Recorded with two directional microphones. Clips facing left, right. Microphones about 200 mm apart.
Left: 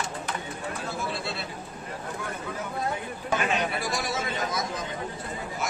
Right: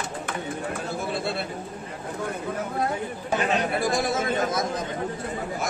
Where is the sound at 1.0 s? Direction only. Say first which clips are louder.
Right 4 dB; 55° right (ahead or behind).